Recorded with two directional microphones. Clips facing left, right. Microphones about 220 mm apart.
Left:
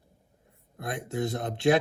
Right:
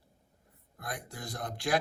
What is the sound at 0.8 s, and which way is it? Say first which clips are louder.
Speech: left 11 dB; 25° left (ahead or behind).